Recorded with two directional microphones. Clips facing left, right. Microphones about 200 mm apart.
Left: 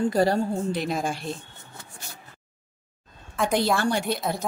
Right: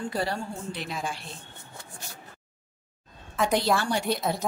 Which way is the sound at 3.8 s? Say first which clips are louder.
Left 3 dB; 50° left (ahead or behind).